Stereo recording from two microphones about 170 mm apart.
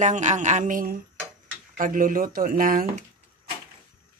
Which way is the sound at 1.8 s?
55° right (ahead or behind).